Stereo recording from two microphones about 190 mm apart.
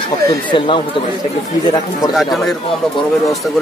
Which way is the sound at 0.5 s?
25° left (ahead or behind).